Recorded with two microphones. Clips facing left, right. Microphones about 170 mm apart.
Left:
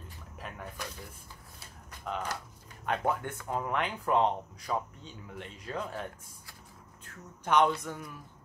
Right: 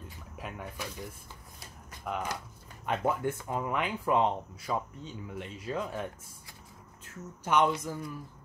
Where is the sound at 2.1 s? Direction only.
15° right (ahead or behind).